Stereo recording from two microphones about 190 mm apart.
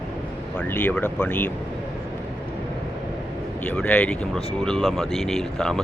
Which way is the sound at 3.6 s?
5° left (ahead or behind).